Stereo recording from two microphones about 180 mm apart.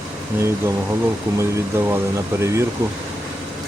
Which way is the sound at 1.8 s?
15° right (ahead or behind).